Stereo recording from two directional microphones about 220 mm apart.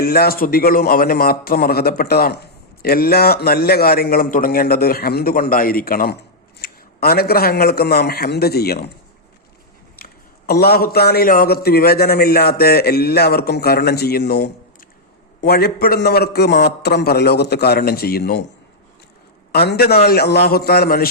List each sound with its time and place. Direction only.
0.0 s a man's voice: 45° left (ahead or behind)
10.0 s a man's voice: 45° left (ahead or behind)
19.5 s a man's voice: 45° left (ahead or behind)